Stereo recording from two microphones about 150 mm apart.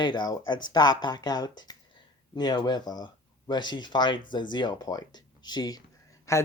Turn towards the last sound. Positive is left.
turn(degrees=20)  # may be behind; listen again after turning